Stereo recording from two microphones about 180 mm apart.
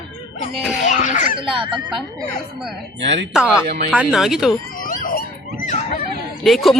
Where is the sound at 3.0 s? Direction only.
75° right (ahead or behind).